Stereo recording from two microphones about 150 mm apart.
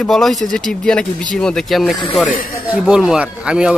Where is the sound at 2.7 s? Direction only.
5° right (ahead or behind).